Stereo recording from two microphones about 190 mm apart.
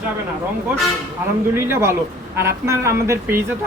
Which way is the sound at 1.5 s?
15° right (ahead or behind).